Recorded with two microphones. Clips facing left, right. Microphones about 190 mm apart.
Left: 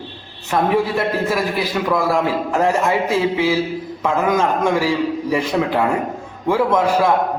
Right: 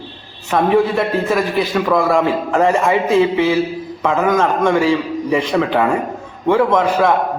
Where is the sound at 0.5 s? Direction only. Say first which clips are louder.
Right 3 dB; 5° left (ahead or behind).